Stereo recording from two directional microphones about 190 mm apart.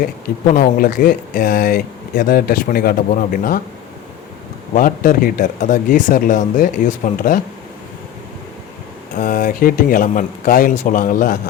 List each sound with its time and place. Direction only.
0.0 s speech: 45° left (ahead or behind)
4.7 s speech: 45° left (ahead or behind)
9.1 s speech: 45° left (ahead or behind)